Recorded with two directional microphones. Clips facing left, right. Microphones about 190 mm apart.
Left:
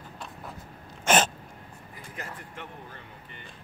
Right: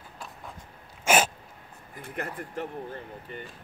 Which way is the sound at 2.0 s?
60° right (ahead or behind).